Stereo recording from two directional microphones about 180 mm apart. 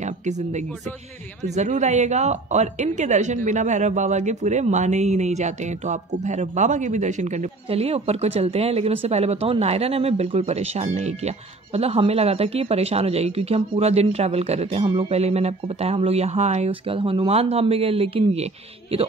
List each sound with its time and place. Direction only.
0.0 s speech: 40° right (ahead or behind)